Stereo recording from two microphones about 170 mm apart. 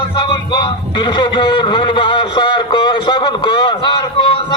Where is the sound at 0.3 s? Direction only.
25° left (ahead or behind).